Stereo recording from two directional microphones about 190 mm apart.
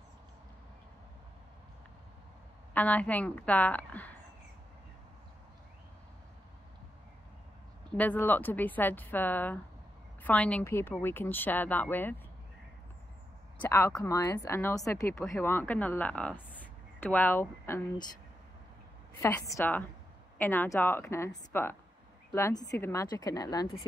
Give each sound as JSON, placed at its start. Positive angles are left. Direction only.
{"t": 2.7, "sound": "speech", "side_deg": 10}
{"t": 8.0, "sound": "speech", "side_deg": 10}
{"t": 13.6, "sound": "speech", "side_deg": 15}
{"t": 19.2, "sound": "a woman's voice", "side_deg": 15}